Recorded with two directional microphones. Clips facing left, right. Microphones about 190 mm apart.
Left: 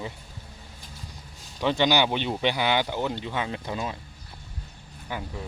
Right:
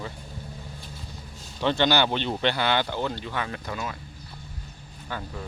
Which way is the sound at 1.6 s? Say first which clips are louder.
Even; 10° left (ahead or behind).